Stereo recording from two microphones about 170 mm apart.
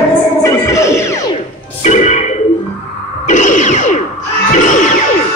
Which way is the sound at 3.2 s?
45° left (ahead or behind).